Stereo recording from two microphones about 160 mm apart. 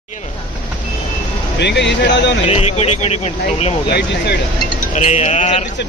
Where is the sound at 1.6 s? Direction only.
90° left.